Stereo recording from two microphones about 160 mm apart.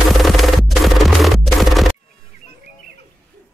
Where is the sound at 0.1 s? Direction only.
Centre (ahead or behind).